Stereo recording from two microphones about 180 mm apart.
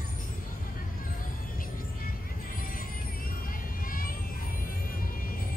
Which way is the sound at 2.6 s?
50° left (ahead or behind).